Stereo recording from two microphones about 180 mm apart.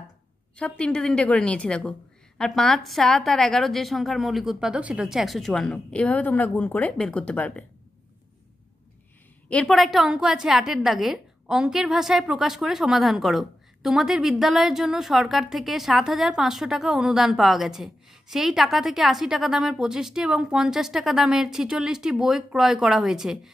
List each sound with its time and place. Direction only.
0.6 s a woman's voice: 5° left (ahead or behind)
9.5 s a woman's voice: 5° left (ahead or behind)